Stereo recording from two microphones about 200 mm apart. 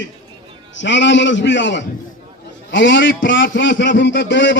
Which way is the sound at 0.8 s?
65° left (ahead or behind).